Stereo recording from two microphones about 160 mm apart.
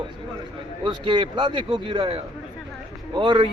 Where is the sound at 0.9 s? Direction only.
30° right (ahead or behind).